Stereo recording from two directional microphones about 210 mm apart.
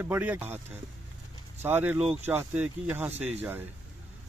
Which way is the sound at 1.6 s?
10° right (ahead or behind).